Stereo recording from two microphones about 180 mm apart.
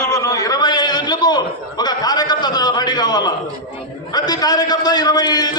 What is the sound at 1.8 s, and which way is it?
A man's voice, 20° left (ahead or behind).